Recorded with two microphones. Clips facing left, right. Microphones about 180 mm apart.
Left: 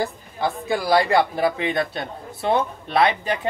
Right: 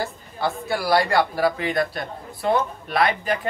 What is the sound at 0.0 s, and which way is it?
A woman's voice, 15° left (ahead or behind).